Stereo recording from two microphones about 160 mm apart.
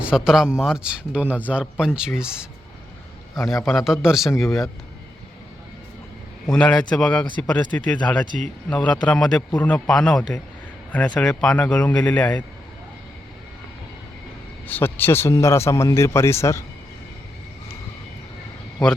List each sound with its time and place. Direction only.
0.0 s a man's voice: 5° right (ahead or behind)
6.5 s a man's voice: 5° left (ahead or behind)
14.7 s speech: 15° left (ahead or behind)